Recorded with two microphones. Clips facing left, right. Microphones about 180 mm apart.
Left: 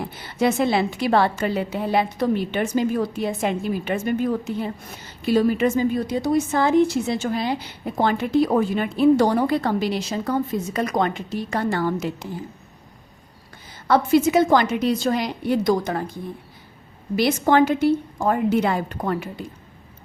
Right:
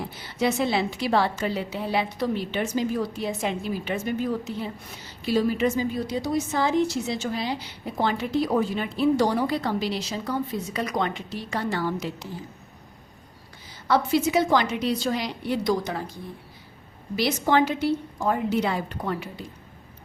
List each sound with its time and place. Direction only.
0.1 s a woman's voice: 55° left (ahead or behind)
13.8 s a woman's voice: 50° left (ahead or behind)
17.2 s a woman's voice: 50° left (ahead or behind)